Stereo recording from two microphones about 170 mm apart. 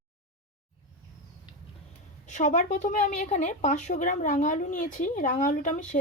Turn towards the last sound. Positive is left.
turn(degrees=50)  # may be behind; listen again after turning